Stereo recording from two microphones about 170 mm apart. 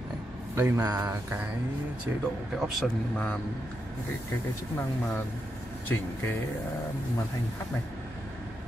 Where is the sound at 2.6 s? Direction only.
Centre (ahead or behind).